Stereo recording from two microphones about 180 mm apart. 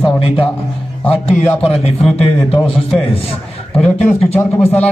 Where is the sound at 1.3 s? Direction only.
10° left (ahead or behind).